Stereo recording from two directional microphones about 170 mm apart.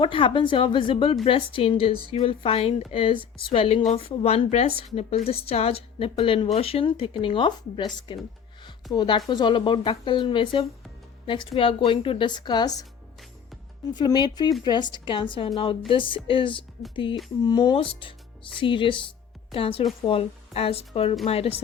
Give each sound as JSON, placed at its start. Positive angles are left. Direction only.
{"t": 0.0, "sound": "a woman's voice", "side_deg": 30}
{"t": 13.9, "sound": "a woman's voice", "side_deg": 25}